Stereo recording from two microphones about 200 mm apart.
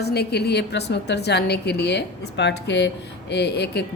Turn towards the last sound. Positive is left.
turn(degrees=55)  # may be behind; listen again after turning